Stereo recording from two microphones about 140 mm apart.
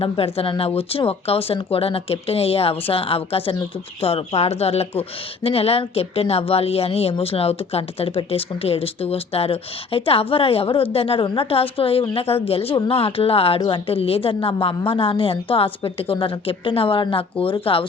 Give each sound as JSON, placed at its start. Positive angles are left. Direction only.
{"t": 0.0, "sound": "a woman's voice", "side_deg": 40}